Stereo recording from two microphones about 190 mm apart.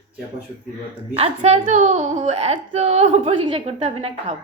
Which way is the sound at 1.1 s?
30° right (ahead or behind).